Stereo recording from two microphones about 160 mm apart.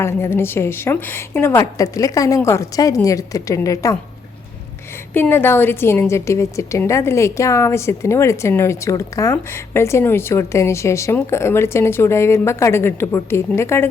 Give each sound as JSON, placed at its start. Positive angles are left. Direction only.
{"t": 0.0, "sound": "a woman's voice", "side_deg": 15}
{"t": 5.1, "sound": "a woman's voice", "side_deg": 15}